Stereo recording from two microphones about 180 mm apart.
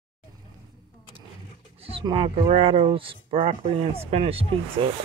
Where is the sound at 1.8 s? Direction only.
30° right (ahead or behind).